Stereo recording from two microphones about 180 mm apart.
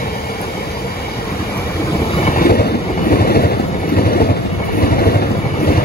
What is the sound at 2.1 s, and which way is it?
Vehicle, 35° left (ahead or behind).